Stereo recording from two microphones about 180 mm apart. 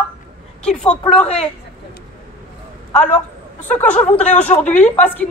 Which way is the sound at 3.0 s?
5° left (ahead or behind).